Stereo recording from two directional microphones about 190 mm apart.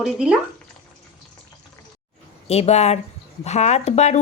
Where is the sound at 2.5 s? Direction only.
35° left (ahead or behind).